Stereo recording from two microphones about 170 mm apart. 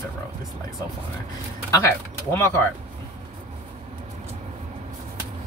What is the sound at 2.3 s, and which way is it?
Speech, 15° left (ahead or behind).